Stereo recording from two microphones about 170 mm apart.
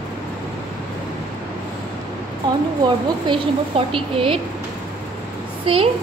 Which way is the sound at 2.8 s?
30° right (ahead or behind).